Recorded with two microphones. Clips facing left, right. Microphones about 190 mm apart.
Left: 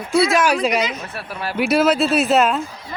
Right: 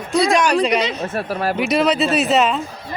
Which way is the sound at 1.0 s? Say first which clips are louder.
Right 7 dB; 45° right (ahead or behind).